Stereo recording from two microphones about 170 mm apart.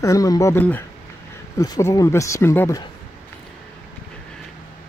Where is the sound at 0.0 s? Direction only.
20° left (ahead or behind).